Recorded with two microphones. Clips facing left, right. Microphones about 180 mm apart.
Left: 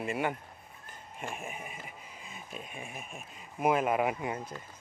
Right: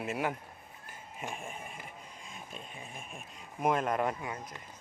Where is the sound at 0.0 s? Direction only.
Centre (ahead or behind).